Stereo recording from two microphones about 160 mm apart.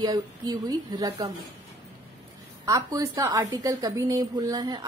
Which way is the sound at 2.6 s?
20° right (ahead or behind).